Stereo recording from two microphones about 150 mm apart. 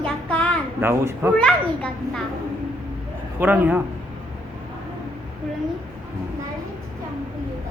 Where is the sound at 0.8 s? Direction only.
15° right (ahead or behind).